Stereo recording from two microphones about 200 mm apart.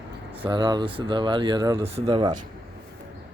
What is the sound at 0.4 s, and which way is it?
Speech, 20° right (ahead or behind).